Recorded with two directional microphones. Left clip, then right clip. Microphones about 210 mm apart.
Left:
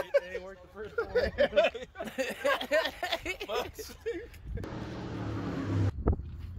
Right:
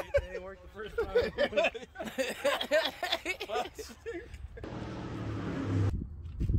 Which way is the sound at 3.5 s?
40° left (ahead or behind).